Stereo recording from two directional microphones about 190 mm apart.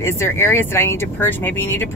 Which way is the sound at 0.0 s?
15° left (ahead or behind).